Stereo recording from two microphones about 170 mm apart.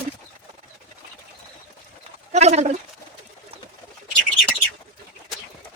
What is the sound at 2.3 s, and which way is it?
Speech, 40° right (ahead or behind).